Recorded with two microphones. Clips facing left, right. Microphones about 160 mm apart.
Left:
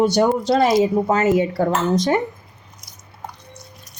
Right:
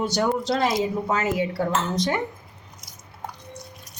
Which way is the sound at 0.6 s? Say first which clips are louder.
Left 7 dB; 55° left (ahead or behind).